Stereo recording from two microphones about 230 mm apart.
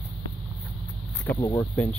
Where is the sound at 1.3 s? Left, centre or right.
Centre.